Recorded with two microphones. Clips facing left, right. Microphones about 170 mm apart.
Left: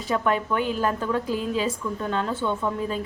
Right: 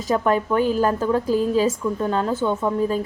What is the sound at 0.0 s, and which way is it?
A woman's voice, 40° right (ahead or behind).